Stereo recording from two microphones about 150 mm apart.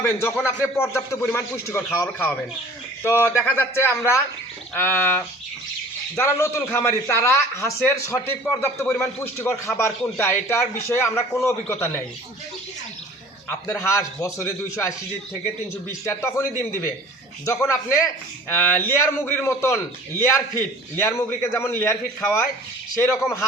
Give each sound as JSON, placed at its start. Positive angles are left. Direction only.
{"t": 0.0, "sound": "speech", "side_deg": 20}
{"t": 6.2, "sound": "speech", "side_deg": 15}
{"t": 13.5, "sound": "a man's voice", "side_deg": 20}
{"t": 16.0, "sound": "speech", "side_deg": 20}